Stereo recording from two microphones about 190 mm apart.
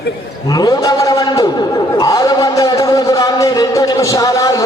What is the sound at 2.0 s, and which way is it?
Music, 20° left (ahead or behind).